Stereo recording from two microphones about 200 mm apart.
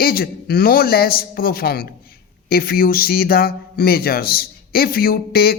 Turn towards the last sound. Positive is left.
turn(degrees=50)  # may be behind; listen again after turning